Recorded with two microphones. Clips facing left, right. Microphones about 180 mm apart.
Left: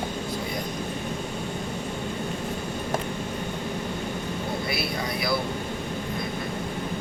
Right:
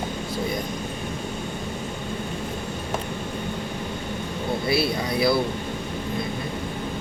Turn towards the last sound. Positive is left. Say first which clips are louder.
# right 6 dB
turn(degrees=-30)  # may be behind; listen again after turning